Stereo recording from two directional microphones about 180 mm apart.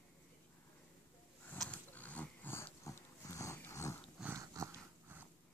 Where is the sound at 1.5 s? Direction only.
5° left (ahead or behind).